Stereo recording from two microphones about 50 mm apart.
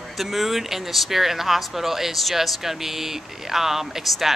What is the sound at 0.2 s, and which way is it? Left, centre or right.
Speech, centre.